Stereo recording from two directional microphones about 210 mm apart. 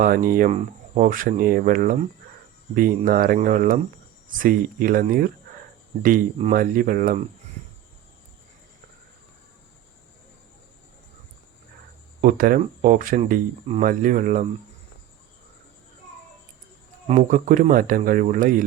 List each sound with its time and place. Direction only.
0.0 s speech: 40° right (ahead or behind)
12.2 s speech: 40° right (ahead or behind)
17.1 s speech: 40° right (ahead or behind)